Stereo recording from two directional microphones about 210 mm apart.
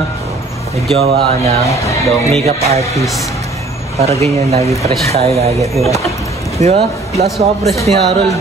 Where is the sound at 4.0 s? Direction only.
30° right (ahead or behind).